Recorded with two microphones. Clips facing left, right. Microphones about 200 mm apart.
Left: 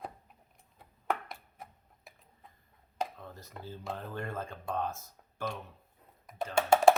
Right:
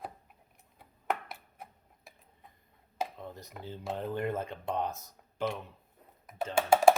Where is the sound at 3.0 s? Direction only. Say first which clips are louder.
Even; 5° right (ahead or behind).